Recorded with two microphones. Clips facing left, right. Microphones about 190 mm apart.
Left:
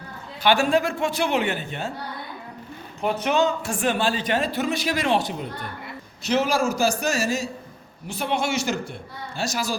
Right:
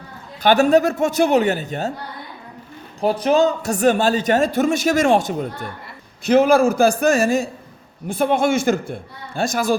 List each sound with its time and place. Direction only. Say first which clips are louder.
0.4 s a woman's voice: right 6 dB; 40° right (ahead or behind)
3.0 s a man's voice: right 6 dB; 35° right (ahead or behind); by 9.7 s 55° right (ahead or behind)